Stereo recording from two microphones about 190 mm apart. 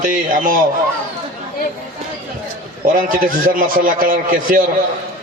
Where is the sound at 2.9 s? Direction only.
50° right (ahead or behind).